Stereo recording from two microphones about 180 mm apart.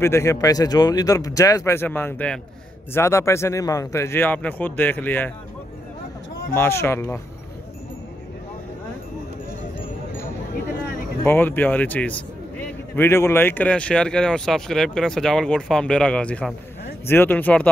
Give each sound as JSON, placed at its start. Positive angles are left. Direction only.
{"t": 0.0, "sound": "speech", "side_deg": 15}
{"t": 6.5, "sound": "speech", "side_deg": 15}
{"t": 11.2, "sound": "speech", "side_deg": 10}